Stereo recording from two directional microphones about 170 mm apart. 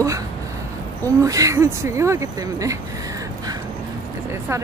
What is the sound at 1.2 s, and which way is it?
Speech, 20° right (ahead or behind).